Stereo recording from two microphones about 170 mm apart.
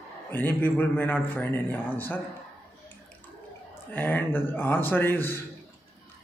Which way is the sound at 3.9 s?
10° left (ahead or behind).